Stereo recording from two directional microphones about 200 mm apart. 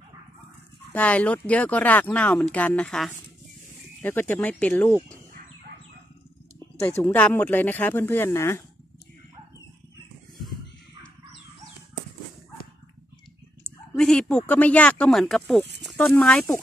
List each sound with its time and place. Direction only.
0.9 s speech: 5° left (ahead or behind)
6.8 s speech: 10° left (ahead or behind)
13.9 s speech: 5° left (ahead or behind)